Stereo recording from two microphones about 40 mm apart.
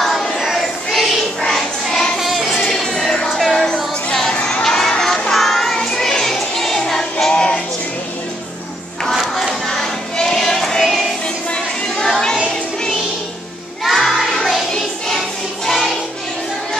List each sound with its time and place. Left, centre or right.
0.4 s child singing: centre
1.5 s child singing: centre
2.1 s music: centre
3.0 s music: centre
4.4 s a sound: left
4.6 s a sound: centre
5.3 s music: centre; by 7.6 s left
9.1 s crowd: centre
9.7 s music: centre
12.0 s child singing: centre
13.8 s music: centre
15.6 s music: centre